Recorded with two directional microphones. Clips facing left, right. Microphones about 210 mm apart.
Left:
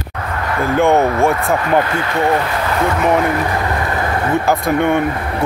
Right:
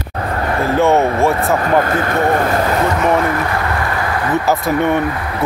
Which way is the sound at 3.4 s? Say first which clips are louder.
Even; 20° left (ahead or behind).